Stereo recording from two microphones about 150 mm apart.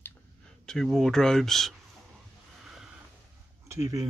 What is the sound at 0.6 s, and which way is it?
Speech, 5° left (ahead or behind).